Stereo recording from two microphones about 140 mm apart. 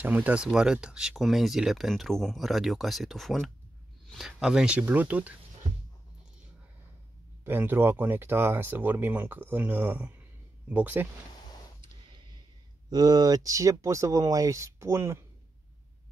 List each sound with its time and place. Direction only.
0.0 s speech: 10° right (ahead or behind)
7.4 s speech: 15° right (ahead or behind)
12.9 s speech: 25° right (ahead or behind)